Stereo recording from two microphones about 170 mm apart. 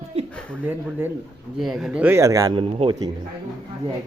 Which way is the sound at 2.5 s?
30° right (ahead or behind).